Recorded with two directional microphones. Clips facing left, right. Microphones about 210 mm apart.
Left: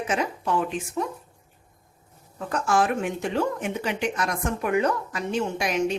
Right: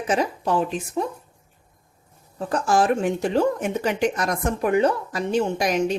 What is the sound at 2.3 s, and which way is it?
Speech, 35° right (ahead or behind).